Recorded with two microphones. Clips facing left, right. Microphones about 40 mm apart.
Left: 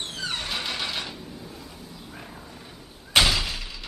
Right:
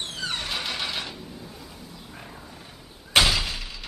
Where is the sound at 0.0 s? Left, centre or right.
Centre.